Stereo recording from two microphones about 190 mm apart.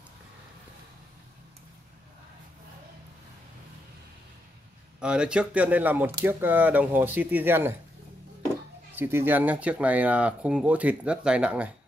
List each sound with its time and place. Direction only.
5.0 s speech: 5° right (ahead or behind)
8.9 s speech: 10° right (ahead or behind)